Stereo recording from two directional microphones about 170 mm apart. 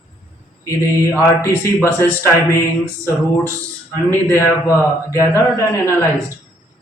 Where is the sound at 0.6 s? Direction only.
20° left (ahead or behind).